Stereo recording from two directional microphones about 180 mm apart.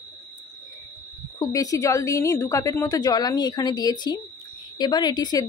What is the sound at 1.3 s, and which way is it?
Speech, 20° left (ahead or behind).